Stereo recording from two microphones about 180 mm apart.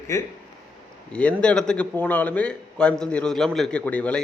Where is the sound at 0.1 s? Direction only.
15° left (ahead or behind).